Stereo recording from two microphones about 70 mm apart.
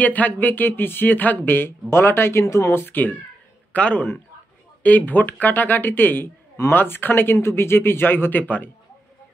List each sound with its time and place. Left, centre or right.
0.0 s speech: left